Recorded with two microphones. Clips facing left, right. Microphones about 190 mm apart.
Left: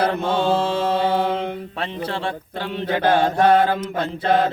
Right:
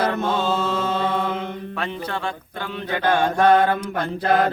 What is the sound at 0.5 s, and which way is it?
Mantra, 30° left (ahead or behind).